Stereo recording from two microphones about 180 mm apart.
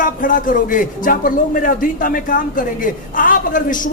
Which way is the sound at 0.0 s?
50° left (ahead or behind).